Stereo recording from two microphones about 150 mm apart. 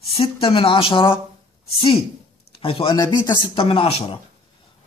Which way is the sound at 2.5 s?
40° left (ahead or behind).